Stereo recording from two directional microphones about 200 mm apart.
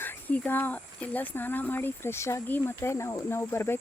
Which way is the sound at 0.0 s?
10° left (ahead or behind).